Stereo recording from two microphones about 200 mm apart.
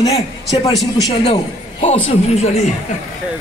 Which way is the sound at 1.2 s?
30° left (ahead or behind).